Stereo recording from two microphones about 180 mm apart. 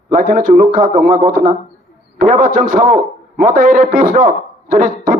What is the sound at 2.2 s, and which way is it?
A man's voice, 50° right (ahead or behind).